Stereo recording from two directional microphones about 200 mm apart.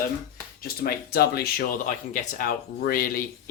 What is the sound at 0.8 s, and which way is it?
Speech, 50° left (ahead or behind).